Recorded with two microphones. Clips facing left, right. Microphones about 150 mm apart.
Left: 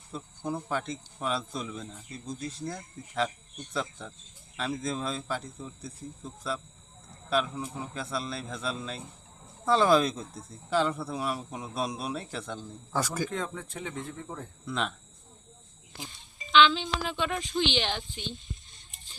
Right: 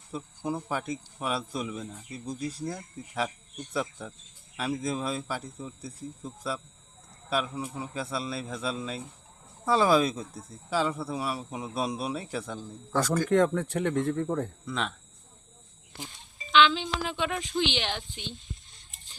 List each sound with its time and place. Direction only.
0.1 s speech: 10° right (ahead or behind)
12.9 s speech: 10° left (ahead or behind)
13.3 s speech: 75° right (ahead or behind)
14.7 s speech: centre (ahead or behind)
16.5 s speech: 10° right (ahead or behind)